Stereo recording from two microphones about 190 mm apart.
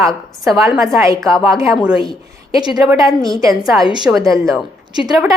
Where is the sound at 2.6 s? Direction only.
20° right (ahead or behind).